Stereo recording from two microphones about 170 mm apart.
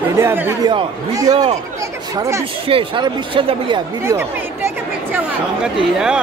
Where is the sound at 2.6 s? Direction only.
30° right (ahead or behind).